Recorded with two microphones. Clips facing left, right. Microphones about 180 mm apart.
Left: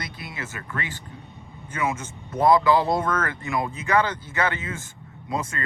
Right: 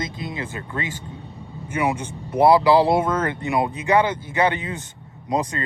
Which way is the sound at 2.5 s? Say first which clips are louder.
Right 4 dB; 35° right (ahead or behind).